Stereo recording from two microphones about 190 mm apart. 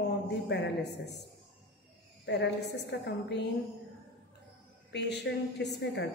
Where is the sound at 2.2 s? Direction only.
65° left (ahead or behind).